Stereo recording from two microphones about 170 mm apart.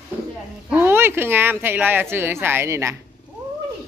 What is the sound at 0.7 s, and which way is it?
Speech, 15° right (ahead or behind).